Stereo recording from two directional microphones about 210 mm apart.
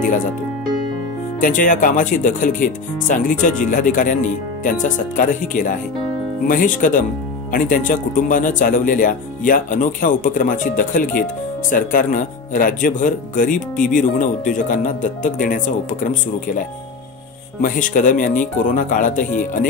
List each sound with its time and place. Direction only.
1.4 s speech: 40° left (ahead or behind)